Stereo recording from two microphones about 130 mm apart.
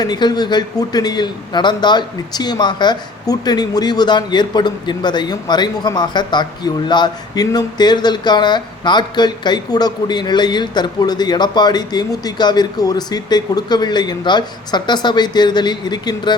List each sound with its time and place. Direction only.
0.0 s a man's voice: 35° left (ahead or behind)